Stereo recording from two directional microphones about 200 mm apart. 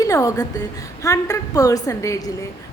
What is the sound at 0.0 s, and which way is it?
A woman's voice, 15° left (ahead or behind).